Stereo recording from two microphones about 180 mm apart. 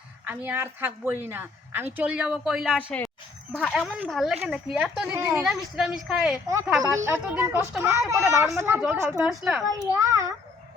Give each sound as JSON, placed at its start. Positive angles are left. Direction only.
{"t": 0.3, "sound": "a woman's voice", "side_deg": -10}
{"t": 5.4, "sound": "a woman's voice", "side_deg": -5}
{"t": 6.9, "sound": "a woman's voice", "side_deg": -15}
{"t": 9.6, "sound": "a child's voice", "side_deg": -20}